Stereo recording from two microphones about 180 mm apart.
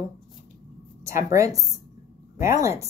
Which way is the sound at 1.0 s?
15° right (ahead or behind).